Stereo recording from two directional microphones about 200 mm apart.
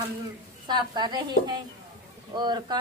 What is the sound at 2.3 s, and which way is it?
Speech, 20° right (ahead or behind).